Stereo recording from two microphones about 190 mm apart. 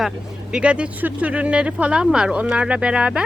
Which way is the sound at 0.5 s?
5° right (ahead or behind).